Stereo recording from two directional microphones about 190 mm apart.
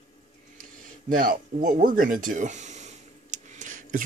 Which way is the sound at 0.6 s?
45° right (ahead or behind).